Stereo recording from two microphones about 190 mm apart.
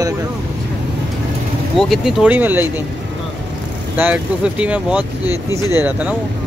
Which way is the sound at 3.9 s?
5° right (ahead or behind).